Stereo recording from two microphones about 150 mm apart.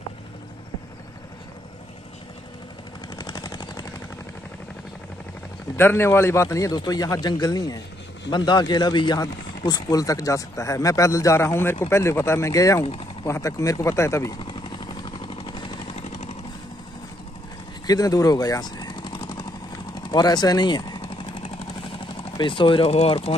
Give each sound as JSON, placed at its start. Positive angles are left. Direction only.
{"t": 3.2, "sound": "a sound", "side_deg": 25}
{"t": 5.8, "sound": "speech", "side_deg": 15}
{"t": 14.4, "sound": "vehicle", "side_deg": 30}
{"t": 16.0, "sound": "vehicle", "side_deg": 50}
{"t": 17.8, "sound": "vehicle", "side_deg": 25}
{"t": 21.9, "sound": "speech", "side_deg": 35}